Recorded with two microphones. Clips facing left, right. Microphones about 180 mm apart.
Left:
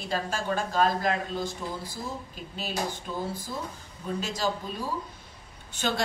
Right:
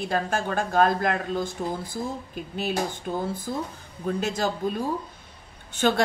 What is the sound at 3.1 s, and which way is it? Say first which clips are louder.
A woman's voice: right 5 dB; 55° right (ahead or behind).